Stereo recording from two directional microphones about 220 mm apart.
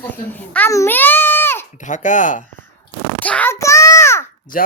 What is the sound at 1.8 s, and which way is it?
Speech, 35° left (ahead or behind).